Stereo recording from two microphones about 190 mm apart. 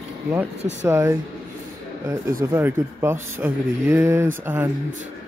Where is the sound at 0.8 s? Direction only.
15° right (ahead or behind).